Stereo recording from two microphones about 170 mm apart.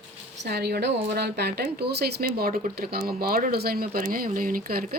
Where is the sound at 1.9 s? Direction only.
65° right (ahead or behind).